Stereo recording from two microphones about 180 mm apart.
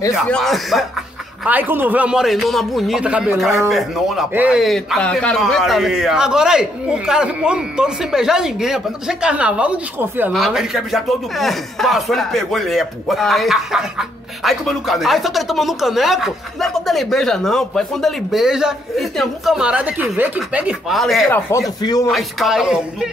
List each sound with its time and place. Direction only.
0.1 s a man's voice: centre (ahead or behind)
21.3 s speech: 15° left (ahead or behind)
22.0 s a man's voice: centre (ahead or behind)